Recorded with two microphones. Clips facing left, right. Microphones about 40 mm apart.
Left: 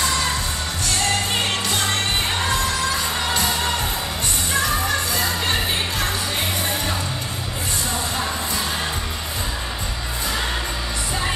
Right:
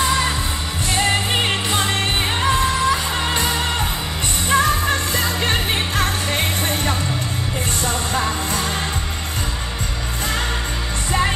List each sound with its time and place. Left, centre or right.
0.8 s music: right
4.5 s music: right